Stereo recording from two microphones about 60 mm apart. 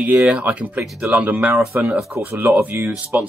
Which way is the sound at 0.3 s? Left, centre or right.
Right.